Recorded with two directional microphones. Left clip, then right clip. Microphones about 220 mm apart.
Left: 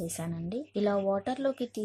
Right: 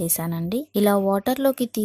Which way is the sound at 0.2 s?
40° right (ahead or behind).